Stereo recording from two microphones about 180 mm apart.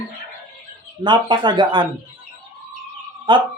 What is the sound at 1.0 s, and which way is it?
Speech, 25° right (ahead or behind).